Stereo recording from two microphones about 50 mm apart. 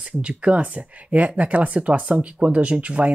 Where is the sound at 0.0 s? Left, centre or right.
Right.